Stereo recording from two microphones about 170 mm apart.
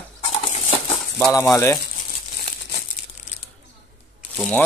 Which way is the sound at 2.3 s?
65° left (ahead or behind).